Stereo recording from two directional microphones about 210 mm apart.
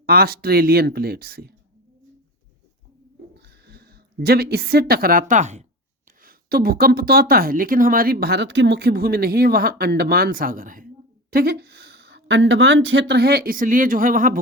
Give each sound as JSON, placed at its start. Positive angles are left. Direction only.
{"t": 0.0, "sound": "speech", "side_deg": -45}
{"t": 3.3, "sound": "a woman's voice", "side_deg": -50}
{"t": 6.2, "sound": "speech", "side_deg": -45}